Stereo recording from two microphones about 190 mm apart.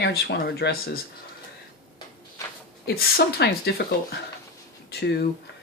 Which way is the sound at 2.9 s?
60° left (ahead or behind).